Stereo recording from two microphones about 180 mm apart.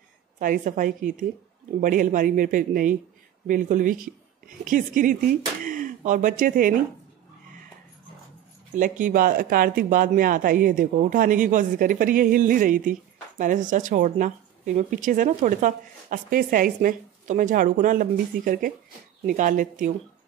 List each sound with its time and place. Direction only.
0.4 s speech: 50° right (ahead or behind)
8.7 s speech: 45° right (ahead or behind)